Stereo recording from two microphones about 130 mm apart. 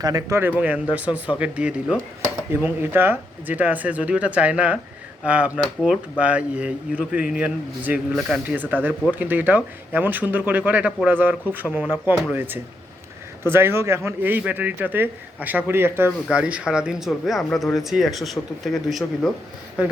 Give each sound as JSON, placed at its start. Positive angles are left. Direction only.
{"t": 0.0, "sound": "speech", "side_deg": -25}
{"t": 19.8, "sound": "speech", "side_deg": -10}